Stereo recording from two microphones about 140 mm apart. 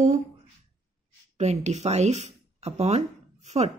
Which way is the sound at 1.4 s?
55° right (ahead or behind).